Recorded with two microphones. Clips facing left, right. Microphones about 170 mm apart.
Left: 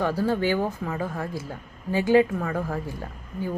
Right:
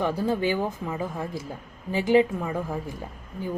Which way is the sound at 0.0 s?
15° right (ahead or behind).